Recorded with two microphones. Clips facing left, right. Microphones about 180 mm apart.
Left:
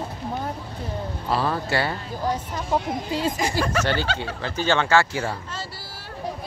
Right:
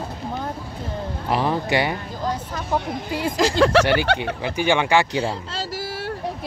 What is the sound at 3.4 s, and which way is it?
Speech, 90° right.